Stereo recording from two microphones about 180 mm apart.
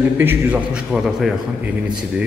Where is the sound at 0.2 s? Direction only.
10° right (ahead or behind).